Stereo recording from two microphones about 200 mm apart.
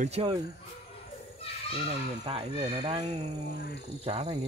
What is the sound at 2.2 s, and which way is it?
Speech, 25° right (ahead or behind).